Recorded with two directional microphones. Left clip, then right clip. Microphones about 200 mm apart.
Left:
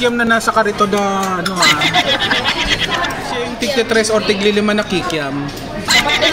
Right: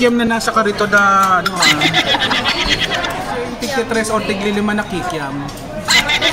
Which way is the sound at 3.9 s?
20° left (ahead or behind).